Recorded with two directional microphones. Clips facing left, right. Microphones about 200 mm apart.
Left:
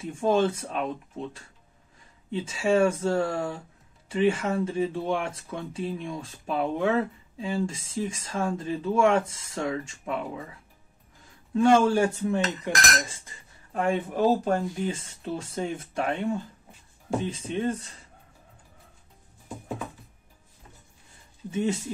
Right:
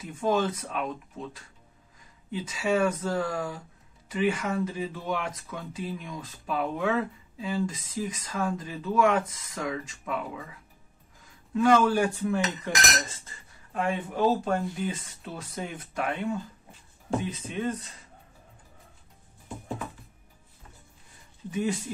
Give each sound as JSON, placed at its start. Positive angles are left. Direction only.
{"t": 0.0, "sound": "speech", "side_deg": 30}
{"t": 2.3, "sound": "speech", "side_deg": 30}
{"t": 11.5, "sound": "speech", "side_deg": 25}
{"t": 13.7, "sound": "speech", "side_deg": 40}
{"t": 17.2, "sound": "speech", "side_deg": 30}
{"t": 21.5, "sound": "speech", "side_deg": 25}